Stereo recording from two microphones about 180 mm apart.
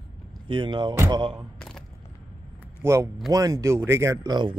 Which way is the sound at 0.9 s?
15° right (ahead or behind).